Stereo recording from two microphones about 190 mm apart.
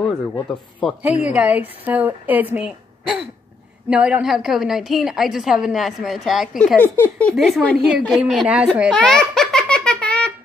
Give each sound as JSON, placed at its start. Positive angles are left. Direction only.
{"t": 0.5, "sound": "a woman's voice", "side_deg": 5}
{"t": 1.0, "sound": "a woman's voice", "side_deg": -5}
{"t": 8.7, "sound": "giggle", "side_deg": 0}